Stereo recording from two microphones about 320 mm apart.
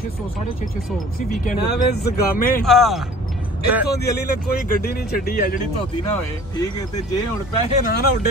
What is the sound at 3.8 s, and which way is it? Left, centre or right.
Speech, left.